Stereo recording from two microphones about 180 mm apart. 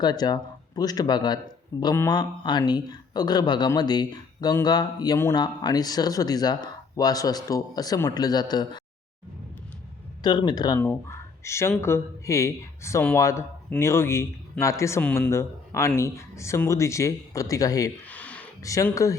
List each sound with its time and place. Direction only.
0.0 s speech: 25° left (ahead or behind)
10.2 s speech: 25° left (ahead or behind)
18.1 s a sound: 10° left (ahead or behind)
18.6 s speech: 20° left (ahead or behind)